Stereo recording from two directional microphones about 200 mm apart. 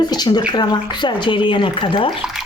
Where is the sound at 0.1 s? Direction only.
20° left (ahead or behind).